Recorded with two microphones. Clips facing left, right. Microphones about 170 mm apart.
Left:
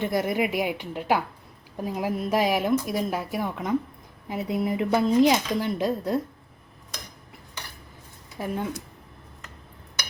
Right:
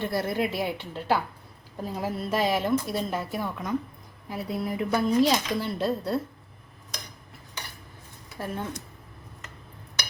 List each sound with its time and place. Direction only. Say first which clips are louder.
0.0 s a woman's voice: left 2 dB; 15° left (ahead or behind)
8.4 s a woman's voice: left 3 dB; 10° left (ahead or behind)